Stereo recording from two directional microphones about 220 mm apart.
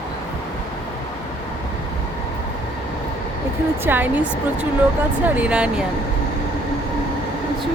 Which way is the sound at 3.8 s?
10° right (ahead or behind).